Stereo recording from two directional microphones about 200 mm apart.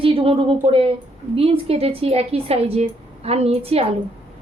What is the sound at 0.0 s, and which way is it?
A woman's voice, 30° right (ahead or behind).